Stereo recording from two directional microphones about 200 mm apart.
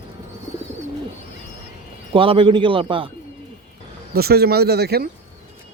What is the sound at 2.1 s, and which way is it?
A man's voice, 25° right (ahead or behind).